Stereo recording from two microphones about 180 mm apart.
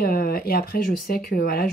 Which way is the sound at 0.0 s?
55° left (ahead or behind).